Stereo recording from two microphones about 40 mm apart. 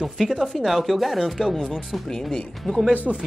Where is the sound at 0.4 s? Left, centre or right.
Centre.